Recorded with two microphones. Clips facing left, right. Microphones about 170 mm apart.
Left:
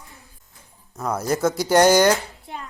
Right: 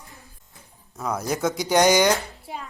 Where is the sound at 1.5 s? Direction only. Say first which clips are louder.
Left 3 dB; 15° right (ahead or behind).